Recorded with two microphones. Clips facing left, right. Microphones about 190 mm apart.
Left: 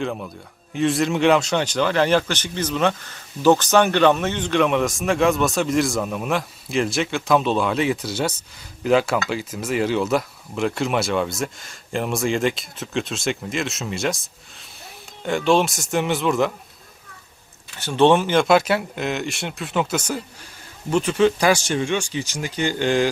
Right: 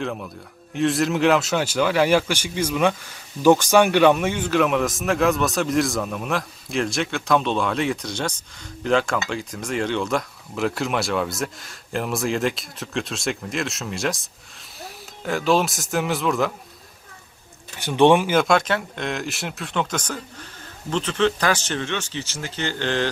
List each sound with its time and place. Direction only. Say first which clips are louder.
0.0 s speech: left 2 dB; 5° left (ahead or behind)
17.7 s speech: even; 15° right (ahead or behind)
18.5 s speech: left 3 dB; 10° left (ahead or behind)